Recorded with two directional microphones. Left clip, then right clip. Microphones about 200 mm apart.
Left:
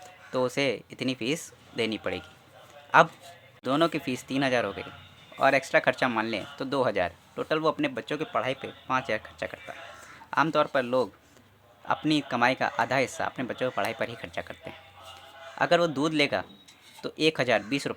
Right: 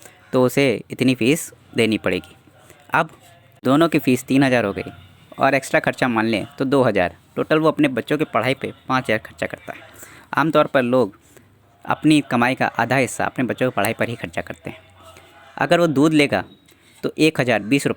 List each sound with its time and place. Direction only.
0.3 s a man's voice: 35° right (ahead or behind)